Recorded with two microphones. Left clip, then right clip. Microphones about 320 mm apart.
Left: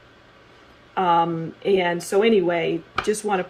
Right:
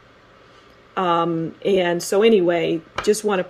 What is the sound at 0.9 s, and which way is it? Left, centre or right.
Speech, right.